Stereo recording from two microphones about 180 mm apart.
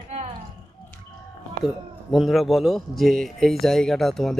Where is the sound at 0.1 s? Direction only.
35° right (ahead or behind).